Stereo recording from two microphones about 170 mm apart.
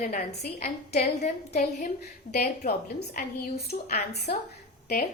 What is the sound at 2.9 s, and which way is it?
A woman's voice, 70° left (ahead or behind).